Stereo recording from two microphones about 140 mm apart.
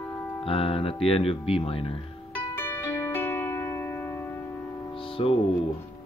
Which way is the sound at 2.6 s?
15° left (ahead or behind).